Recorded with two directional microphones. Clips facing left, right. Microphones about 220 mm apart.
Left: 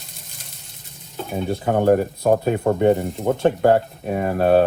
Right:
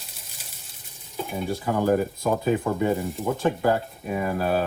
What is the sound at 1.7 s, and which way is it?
Speech, 60° left (ahead or behind).